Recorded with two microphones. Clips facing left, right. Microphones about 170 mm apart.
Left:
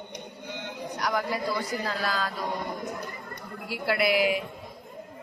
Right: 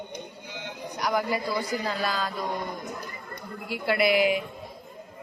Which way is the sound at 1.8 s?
Centre (ahead or behind).